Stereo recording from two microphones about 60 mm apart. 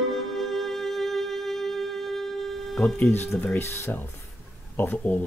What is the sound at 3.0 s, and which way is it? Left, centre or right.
Speech, left.